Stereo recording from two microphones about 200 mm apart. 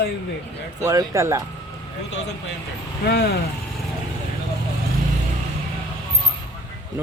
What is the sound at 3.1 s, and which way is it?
Speech, 55° left (ahead or behind).